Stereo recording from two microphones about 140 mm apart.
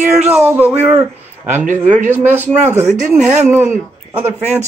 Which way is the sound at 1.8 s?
60° right (ahead or behind).